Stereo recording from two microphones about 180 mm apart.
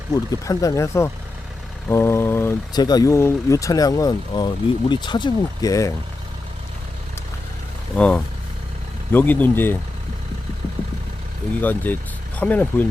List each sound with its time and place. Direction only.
0.1 s speech: 20° left (ahead or behind)
7.9 s speech: 5° left (ahead or behind)
11.6 s speech: 10° left (ahead or behind)